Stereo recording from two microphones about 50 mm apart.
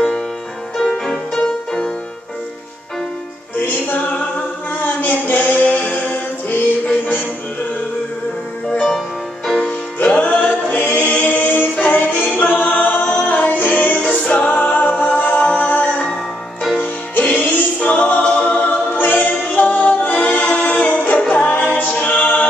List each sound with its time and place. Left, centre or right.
0.8 s music: centre
3.5 s music: left
9.6 s music: left
12.4 s a capella: left
14.1 s music: left
17.8 s a capella: left
18.2 s choir: left
20.5 s music: left